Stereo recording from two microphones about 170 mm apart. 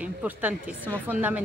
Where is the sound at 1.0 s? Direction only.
10° right (ahead or behind).